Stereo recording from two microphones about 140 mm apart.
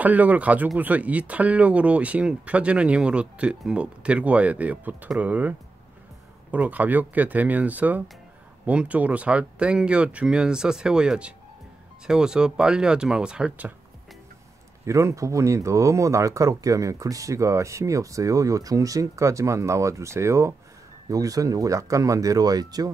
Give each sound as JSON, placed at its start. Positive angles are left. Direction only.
{"t": 0.0, "sound": "speech", "side_deg": -10}
{"t": 14.9, "sound": "speech", "side_deg": -20}